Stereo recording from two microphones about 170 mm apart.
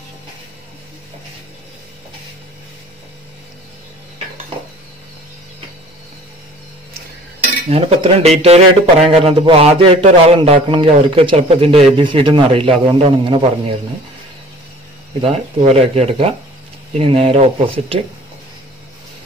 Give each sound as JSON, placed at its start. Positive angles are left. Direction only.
{"t": 7.3, "sound": "dishes", "side_deg": -35}
{"t": 15.2, "sound": "dishes", "side_deg": -35}